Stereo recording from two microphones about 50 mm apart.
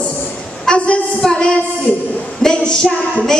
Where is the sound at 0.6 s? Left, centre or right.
Left.